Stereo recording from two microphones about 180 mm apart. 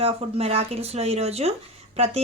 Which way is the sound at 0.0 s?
35° right (ahead or behind).